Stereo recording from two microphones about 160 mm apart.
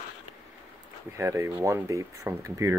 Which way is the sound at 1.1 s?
15° right (ahead or behind).